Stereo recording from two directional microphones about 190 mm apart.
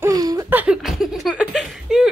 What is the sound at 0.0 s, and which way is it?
Laughter, 20° right (ahead or behind).